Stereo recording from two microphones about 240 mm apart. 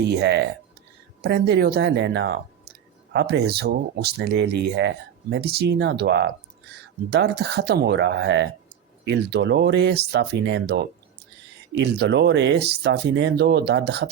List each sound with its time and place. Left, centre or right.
0.1 s speech: right